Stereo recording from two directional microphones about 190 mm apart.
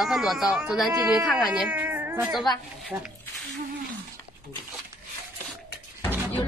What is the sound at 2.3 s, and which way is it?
Speech, centre (ahead or behind).